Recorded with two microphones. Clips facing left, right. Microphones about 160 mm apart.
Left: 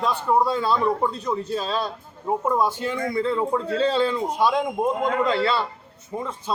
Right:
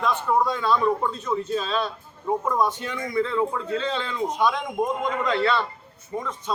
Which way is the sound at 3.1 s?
35° left (ahead or behind).